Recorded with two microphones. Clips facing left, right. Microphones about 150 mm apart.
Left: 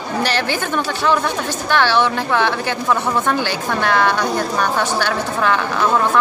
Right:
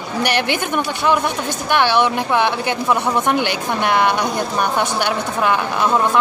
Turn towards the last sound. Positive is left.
turn(degrees=-15)  # may be behind; listen again after turning